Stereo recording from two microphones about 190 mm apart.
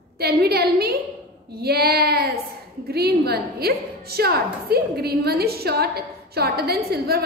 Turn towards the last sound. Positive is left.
turn(degrees=-55)  # may be behind; listen again after turning